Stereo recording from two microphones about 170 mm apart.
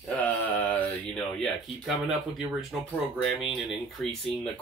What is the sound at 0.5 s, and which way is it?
Mantra, 10° left (ahead or behind).